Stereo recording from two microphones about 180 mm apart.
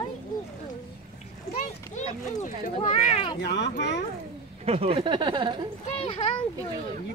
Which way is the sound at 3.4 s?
70° left (ahead or behind).